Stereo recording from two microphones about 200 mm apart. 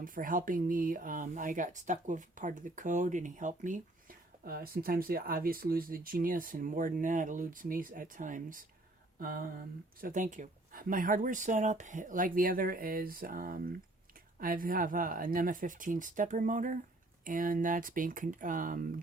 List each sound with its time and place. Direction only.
0.0 s speech: 45° right (ahead or behind)
9.1 s a sound: 45° right (ahead or behind)
10.0 s speech: 40° right (ahead or behind)